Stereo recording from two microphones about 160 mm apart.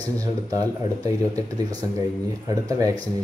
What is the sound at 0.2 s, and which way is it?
Speech, 20° right (ahead or behind).